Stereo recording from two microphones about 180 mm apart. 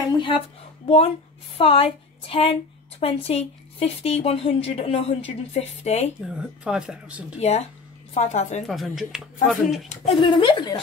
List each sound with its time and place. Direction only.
0.8 s a woman's voice: 30° left (ahead or behind)
6.3 s speech: 5° right (ahead or behind)
7.3 s a woman's voice: 35° left (ahead or behind)
8.6 s speech: centre (ahead or behind)
9.8 s speech: 30° left (ahead or behind)